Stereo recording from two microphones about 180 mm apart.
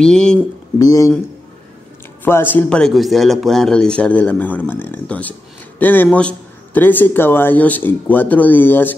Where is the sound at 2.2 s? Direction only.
10° left (ahead or behind).